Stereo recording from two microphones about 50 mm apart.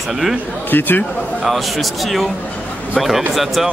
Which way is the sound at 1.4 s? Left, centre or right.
Centre.